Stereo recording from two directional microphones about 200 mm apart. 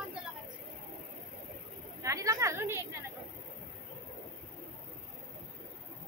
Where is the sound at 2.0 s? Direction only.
15° right (ahead or behind).